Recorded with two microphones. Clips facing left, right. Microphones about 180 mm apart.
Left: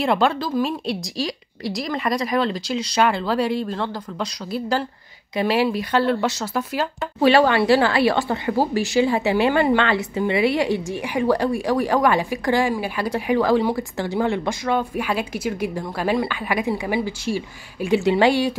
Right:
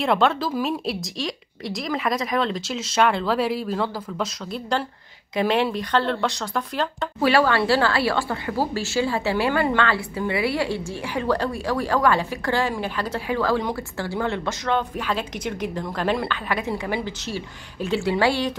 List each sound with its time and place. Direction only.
0.0 s speech: centre (ahead or behind)
7.2 s speech: 20° left (ahead or behind)